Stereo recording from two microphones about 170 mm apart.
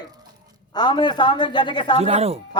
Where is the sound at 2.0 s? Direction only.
40° right (ahead or behind).